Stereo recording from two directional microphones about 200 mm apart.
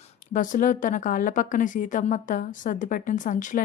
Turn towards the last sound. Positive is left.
turn(degrees=40)  # may be behind; listen again after turning